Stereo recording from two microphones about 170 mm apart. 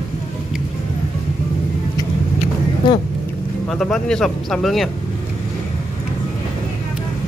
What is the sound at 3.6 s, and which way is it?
Speech, 5° left (ahead or behind).